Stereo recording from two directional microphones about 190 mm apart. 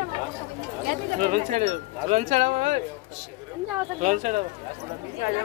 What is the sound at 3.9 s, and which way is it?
Speech, 40° right (ahead or behind).